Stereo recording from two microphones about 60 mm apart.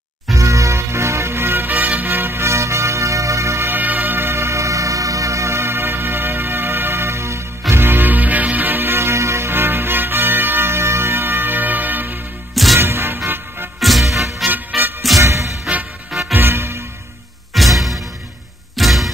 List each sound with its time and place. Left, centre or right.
0.3 s music: right
3.7 s music: right
7.7 s music: right
12.7 s music: right
13.7 s music: centre
15.1 s music: right
16.1 s music: centre
16.3 s music: right
17.6 s music: centre